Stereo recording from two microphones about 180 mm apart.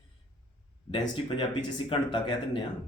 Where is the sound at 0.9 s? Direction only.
25° left (ahead or behind).